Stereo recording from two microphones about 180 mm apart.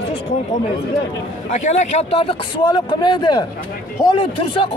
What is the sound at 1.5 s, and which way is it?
Speech, 40° left (ahead or behind).